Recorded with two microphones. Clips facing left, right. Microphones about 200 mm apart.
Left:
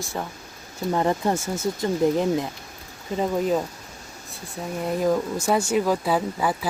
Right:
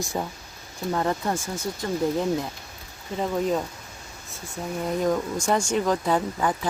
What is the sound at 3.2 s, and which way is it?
Speech, 5° left (ahead or behind).